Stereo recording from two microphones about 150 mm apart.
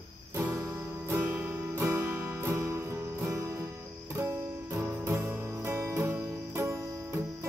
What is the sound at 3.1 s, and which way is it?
Music, 15° right (ahead or behind).